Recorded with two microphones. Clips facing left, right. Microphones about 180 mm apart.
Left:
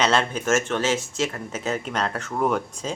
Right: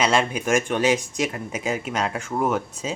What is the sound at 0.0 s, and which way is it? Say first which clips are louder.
Speech: right 1 dB; 10° right (ahead or behind).